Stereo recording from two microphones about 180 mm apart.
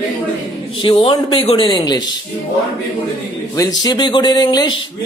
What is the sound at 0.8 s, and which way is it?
Speech, 30° left (ahead or behind).